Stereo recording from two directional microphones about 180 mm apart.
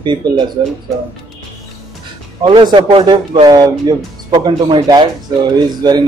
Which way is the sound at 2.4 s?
25° right (ahead or behind).